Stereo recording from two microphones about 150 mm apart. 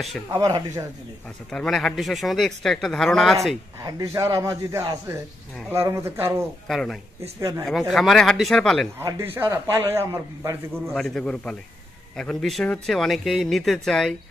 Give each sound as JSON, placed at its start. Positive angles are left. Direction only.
{"t": 0.3, "sound": "a man's voice", "side_deg": -25}
{"t": 1.5, "sound": "speech", "side_deg": 5}
{"t": 3.8, "sound": "a man's voice", "side_deg": -20}
{"t": 6.7, "sound": "speech", "side_deg": 5}
{"t": 7.3, "sound": "a man's voice", "side_deg": -20}
{"t": 7.9, "sound": "speech", "side_deg": 0}
{"t": 9.0, "sound": "a man's voice", "side_deg": -15}
{"t": 11.0, "sound": "speech", "side_deg": 5}